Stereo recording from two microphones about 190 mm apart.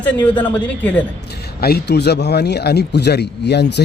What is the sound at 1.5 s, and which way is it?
A man's voice, 55° left (ahead or behind).